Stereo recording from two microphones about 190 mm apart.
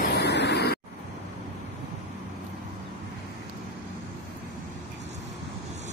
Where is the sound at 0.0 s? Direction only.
60° left (ahead or behind).